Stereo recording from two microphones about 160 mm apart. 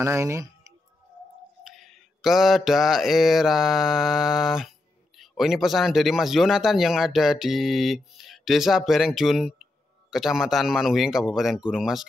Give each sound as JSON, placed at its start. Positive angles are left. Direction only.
{"t": 0.0, "sound": "speech", "side_deg": -15}
{"t": 1.7, "sound": "mantra", "side_deg": 0}